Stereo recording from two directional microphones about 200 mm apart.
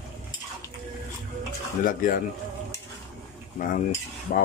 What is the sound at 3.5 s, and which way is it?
Speech, 45° left (ahead or behind).